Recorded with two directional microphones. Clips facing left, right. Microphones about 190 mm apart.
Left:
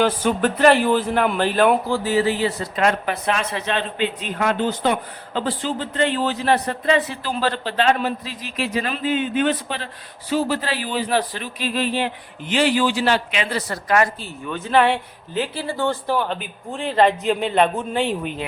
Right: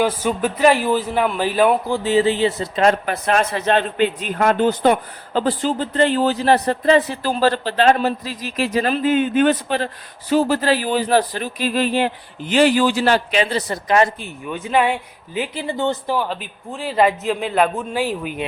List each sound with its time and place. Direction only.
0.0 s speech: 5° right (ahead or behind)
1.9 s speech: 25° right (ahead or behind)
3.1 s a man's voice: 45° right (ahead or behind); by 16.1 s 20° right (ahead or behind)
16.1 s a man's voice: 5° right (ahead or behind)